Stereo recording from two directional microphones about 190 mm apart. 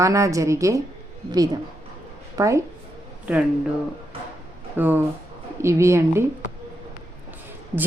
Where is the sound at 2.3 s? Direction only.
15° right (ahead or behind).